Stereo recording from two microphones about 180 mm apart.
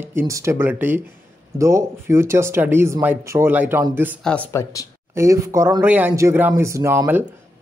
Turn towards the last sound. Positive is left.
turn(degrees=-10)  # may be behind; listen again after turning